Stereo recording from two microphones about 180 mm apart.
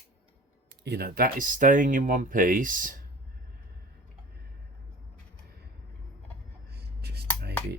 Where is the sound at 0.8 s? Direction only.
60° right (ahead or behind).